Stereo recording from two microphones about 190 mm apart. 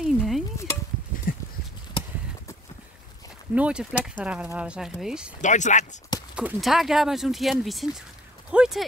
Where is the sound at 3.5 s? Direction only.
5° right (ahead or behind).